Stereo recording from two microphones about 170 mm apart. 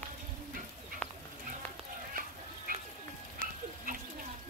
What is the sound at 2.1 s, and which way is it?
Fowl, 55° right (ahead or behind).